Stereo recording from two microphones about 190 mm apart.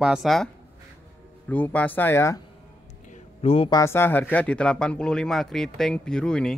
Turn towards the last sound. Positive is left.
turn(degrees=5)  # may be behind; listen again after turning